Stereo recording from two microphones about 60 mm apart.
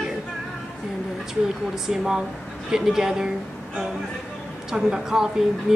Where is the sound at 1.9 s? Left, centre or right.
Centre.